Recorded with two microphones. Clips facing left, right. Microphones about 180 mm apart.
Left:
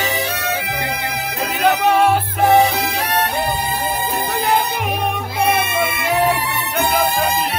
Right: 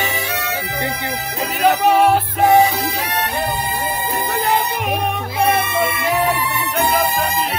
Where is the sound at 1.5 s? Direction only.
5° right (ahead or behind).